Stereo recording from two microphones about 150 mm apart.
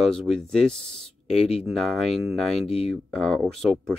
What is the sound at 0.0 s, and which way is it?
Speech, centre (ahead or behind).